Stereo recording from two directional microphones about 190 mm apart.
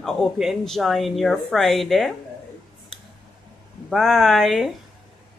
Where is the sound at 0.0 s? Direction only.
Centre (ahead or behind).